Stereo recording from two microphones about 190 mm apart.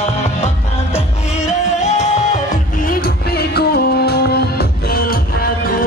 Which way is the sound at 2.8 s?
50° left (ahead or behind).